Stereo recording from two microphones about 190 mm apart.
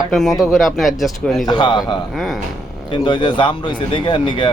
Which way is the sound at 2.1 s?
Centre (ahead or behind).